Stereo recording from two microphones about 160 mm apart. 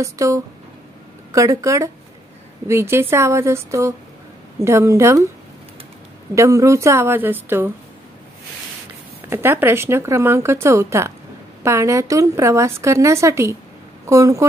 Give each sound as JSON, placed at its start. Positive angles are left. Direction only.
{"t": 0.0, "sound": "a woman's voice", "side_deg": -20}
{"t": 6.3, "sound": "a woman's voice", "side_deg": -20}
{"t": 9.3, "sound": "a woman's voice", "side_deg": -15}